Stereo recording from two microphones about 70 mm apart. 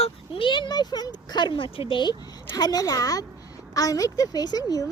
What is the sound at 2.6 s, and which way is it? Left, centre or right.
Speech, left.